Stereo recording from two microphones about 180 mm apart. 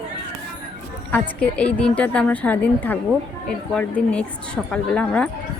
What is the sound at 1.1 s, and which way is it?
A woman's voice, 5° left (ahead or behind).